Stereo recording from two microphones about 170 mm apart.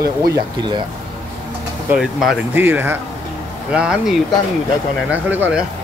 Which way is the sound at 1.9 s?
5° right (ahead or behind).